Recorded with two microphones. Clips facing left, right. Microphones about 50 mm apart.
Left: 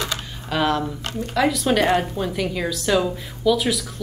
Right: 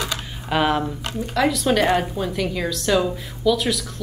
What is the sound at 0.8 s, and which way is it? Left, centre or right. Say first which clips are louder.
A woman's voice: right 1 dB; centre.